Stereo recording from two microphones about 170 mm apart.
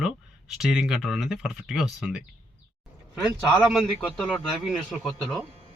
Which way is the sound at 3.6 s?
Centre (ahead or behind).